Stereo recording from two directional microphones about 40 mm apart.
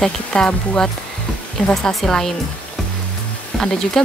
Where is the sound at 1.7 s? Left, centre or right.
Centre.